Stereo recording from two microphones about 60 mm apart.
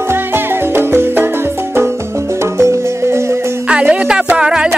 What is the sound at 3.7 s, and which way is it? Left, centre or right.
Music, centre.